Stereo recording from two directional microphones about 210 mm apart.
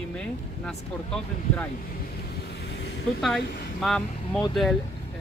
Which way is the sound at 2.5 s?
50° left (ahead or behind).